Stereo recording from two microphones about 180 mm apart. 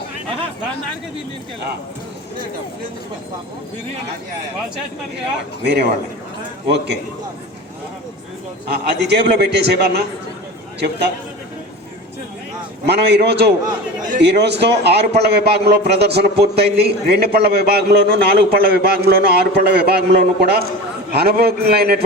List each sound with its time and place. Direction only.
6.7 s a man's voice: 65° right (ahead or behind)
8.7 s a man's voice: 65° right (ahead or behind)
12.8 s a man's voice: 65° right (ahead or behind)